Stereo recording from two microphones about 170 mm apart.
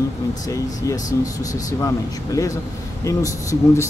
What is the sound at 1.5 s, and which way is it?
Speech, 20° left (ahead or behind).